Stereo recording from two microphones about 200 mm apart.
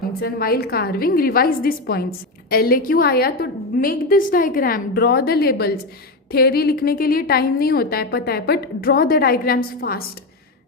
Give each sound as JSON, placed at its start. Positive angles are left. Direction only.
{"t": 0.2, "sound": "a woman's voice", "side_deg": 50}